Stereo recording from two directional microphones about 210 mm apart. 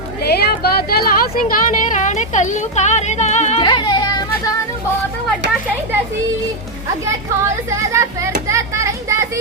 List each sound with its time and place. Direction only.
0.3 s speech: 50° left (ahead or behind); by 3.6 s 30° left (ahead or behind)
3.6 s music: 20° left (ahead or behind)
8.4 s children playing: 15° right (ahead or behind)